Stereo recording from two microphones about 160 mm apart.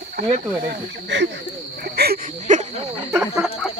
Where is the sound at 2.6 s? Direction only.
40° right (ahead or behind).